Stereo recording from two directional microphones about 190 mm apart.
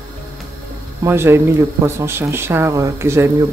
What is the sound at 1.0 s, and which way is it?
Speech, 15° right (ahead or behind).